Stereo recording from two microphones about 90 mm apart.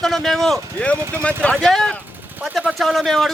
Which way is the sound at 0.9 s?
30° right (ahead or behind).